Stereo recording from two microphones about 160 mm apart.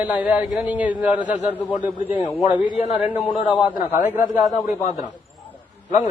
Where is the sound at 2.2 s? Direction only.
40° left (ahead or behind).